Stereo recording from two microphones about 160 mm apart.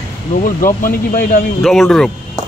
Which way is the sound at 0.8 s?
65° left (ahead or behind).